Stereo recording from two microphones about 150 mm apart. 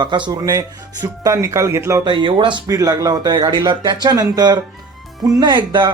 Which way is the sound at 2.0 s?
30° right (ahead or behind).